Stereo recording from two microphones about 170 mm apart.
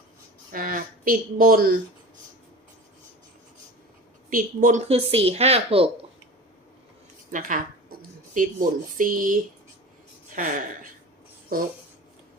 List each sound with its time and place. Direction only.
0.5 s speech: 55° right (ahead or behind)
4.3 s speech: 50° right (ahead or behind); by 5.9 s 35° right (ahead or behind)
7.3 s a sound: 50° right (ahead or behind)
9.0 s speech: 55° right (ahead or behind)